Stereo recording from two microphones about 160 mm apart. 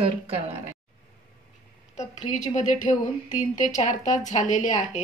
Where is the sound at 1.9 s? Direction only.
50° left (ahead or behind).